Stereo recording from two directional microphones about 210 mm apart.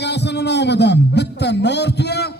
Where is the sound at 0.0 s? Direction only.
55° left (ahead or behind).